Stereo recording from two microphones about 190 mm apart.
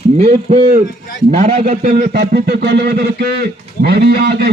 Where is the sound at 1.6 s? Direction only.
50° right (ahead or behind).